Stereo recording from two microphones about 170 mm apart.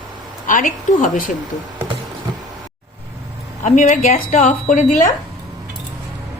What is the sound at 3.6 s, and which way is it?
A woman's voice, 45° left (ahead or behind).